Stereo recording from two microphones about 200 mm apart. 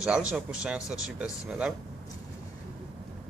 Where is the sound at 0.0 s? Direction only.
5° right (ahead or behind).